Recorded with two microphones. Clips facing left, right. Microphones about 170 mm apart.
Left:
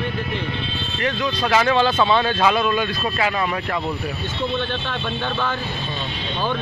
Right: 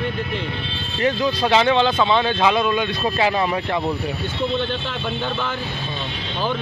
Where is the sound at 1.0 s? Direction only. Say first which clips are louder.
Right 4 dB; 30° right (ahead or behind).